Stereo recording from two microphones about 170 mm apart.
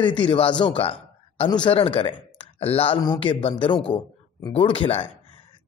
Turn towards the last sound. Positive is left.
turn(degrees=35)  # may be behind; listen again after turning